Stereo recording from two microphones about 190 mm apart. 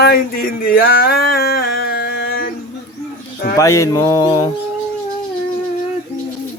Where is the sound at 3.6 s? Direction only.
15° left (ahead or behind).